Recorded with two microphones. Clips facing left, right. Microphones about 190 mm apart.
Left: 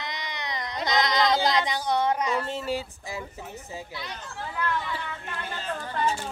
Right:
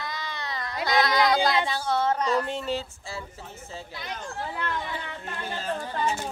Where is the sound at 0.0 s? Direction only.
20° left (ahead or behind).